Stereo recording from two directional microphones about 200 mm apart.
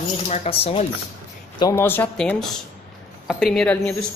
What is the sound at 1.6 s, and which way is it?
Speech, 15° left (ahead or behind).